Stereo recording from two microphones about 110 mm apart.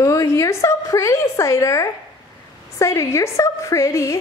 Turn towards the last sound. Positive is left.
turn(degrees=25)  # may be behind; listen again after turning